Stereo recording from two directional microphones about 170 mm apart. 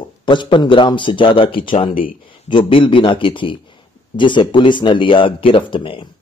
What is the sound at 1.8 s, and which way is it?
Speech, 55° left (ahead or behind).